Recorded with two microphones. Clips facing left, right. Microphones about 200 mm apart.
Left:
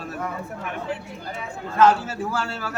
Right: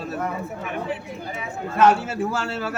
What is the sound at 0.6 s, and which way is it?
Speech, 5° right (ahead or behind).